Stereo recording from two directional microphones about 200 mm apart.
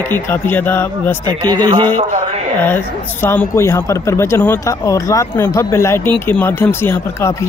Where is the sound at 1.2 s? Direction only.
20° right (ahead or behind).